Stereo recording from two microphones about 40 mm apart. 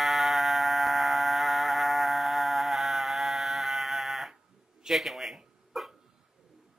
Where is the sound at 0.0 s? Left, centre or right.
Centre.